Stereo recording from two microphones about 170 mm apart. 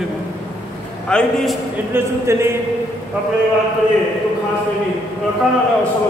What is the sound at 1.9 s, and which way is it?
Speech, 15° right (ahead or behind).